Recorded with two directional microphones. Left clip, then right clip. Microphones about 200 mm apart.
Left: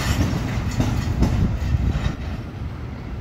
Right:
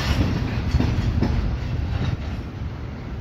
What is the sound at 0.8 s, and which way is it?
Train, 40° left (ahead or behind).